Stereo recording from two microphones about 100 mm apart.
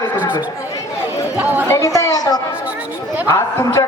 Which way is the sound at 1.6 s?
30° left (ahead or behind).